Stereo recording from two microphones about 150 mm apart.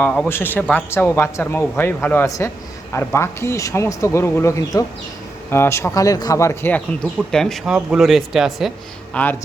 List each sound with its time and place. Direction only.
0.0 s speech: 10° left (ahead or behind)
7.3 s speech: 5° left (ahead or behind)
9.2 s speech: 10° left (ahead or behind)